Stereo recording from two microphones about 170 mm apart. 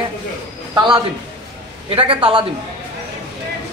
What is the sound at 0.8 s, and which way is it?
A man's voice, 25° right (ahead or behind).